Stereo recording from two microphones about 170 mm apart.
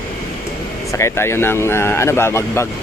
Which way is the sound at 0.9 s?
15° left (ahead or behind).